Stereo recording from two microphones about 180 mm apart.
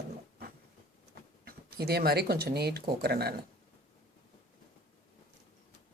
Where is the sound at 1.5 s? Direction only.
60° right (ahead or behind).